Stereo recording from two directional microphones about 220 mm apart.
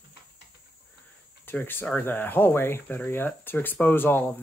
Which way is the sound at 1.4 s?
10° left (ahead or behind).